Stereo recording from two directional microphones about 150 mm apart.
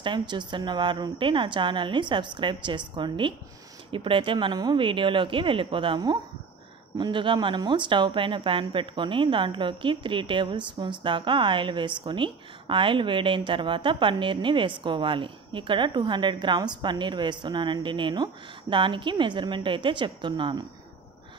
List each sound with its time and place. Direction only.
0.0 s speech: 30° right (ahead or behind)